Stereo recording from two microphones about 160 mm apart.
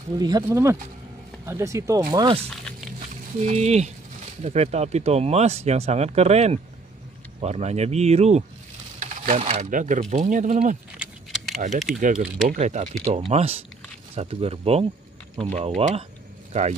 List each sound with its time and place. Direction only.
0.4 s speech: 15° right (ahead or behind)
2.0 s speech: 30° right (ahead or behind)
3.3 s speech: 45° right (ahead or behind)
11.0 s keys jangling: centre (ahead or behind)
12.0 s speech: 55° right (ahead or behind)